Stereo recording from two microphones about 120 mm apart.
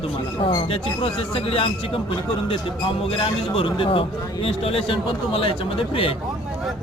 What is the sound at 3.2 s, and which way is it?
A man's voice, 45° left (ahead or behind).